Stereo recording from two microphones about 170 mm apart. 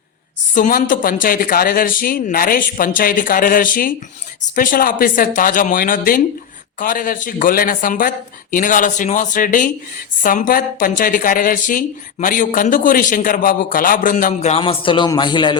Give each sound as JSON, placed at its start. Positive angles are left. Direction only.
{"t": 0.5, "sound": "speech", "side_deg": 50}
{"t": 14.5, "sound": "a man's voice", "side_deg": 30}